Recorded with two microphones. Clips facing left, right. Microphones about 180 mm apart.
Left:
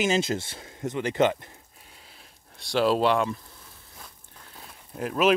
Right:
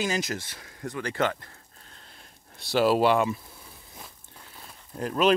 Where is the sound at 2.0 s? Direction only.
5° left (ahead or behind).